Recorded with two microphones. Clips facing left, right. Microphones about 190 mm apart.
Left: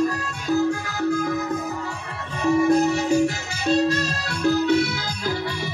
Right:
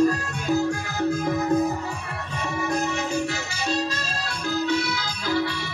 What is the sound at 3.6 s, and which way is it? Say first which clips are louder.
Music: left 8 dB; 60° left (ahead or behind).